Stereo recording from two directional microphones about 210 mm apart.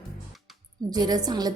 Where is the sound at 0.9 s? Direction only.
20° right (ahead or behind).